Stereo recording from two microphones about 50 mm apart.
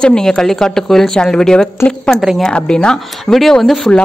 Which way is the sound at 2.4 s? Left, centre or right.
Centre.